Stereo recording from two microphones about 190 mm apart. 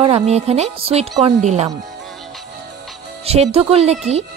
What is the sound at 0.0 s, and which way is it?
Speech, 35° right (ahead or behind).